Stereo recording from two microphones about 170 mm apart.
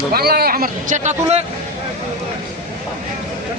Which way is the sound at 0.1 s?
65° right (ahead or behind).